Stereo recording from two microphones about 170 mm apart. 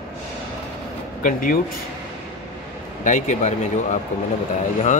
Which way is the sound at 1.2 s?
55° left (ahead or behind).